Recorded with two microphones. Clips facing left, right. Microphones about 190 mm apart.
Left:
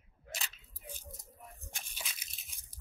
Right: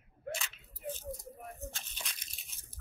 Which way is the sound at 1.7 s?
5° left (ahead or behind).